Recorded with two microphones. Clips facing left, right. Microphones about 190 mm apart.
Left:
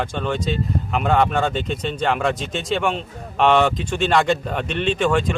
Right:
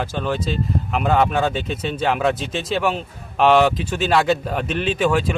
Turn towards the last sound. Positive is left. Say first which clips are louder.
# even
turn(degrees=-5)  # may be behind; listen again after turning